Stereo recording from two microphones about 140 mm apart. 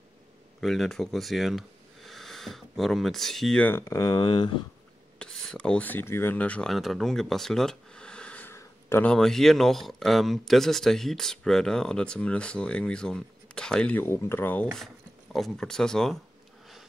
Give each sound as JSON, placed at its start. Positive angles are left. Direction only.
{"t": 0.6, "sound": "speech", "side_deg": 0}
{"t": 3.6, "sound": "speech", "side_deg": 20}
{"t": 5.2, "sound": "speech", "side_deg": 5}
{"t": 9.1, "sound": "speech", "side_deg": 5}
{"t": 15.3, "sound": "speech", "side_deg": 5}